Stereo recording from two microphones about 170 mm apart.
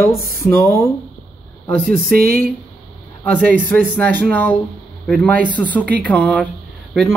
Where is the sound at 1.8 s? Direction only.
60° right (ahead or behind).